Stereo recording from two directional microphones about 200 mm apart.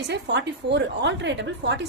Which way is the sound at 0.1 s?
60° right (ahead or behind).